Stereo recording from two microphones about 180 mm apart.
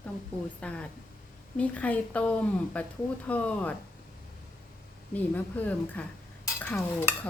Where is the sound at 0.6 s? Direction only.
5° left (ahead or behind).